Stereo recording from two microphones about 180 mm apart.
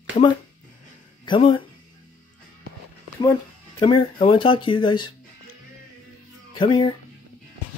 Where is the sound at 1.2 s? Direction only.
25° left (ahead or behind).